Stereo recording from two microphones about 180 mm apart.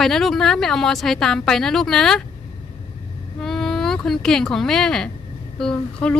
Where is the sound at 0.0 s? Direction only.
Centre (ahead or behind).